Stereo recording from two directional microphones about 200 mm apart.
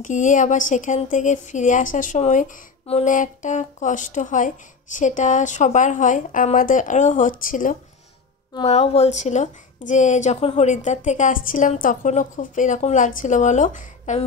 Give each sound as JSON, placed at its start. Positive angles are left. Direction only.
{"t": 0.0, "sound": "a woman's voice", "side_deg": 40}
{"t": 8.6, "sound": "a woman's voice", "side_deg": 30}